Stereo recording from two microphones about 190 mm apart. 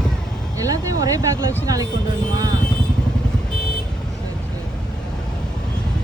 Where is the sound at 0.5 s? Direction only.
20° right (ahead or behind).